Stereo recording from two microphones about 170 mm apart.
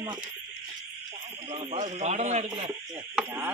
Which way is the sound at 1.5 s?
30° right (ahead or behind).